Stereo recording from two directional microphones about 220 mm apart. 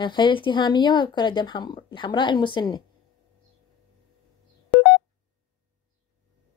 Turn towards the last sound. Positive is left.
turn(degrees=0)  # may be behind; listen again after turning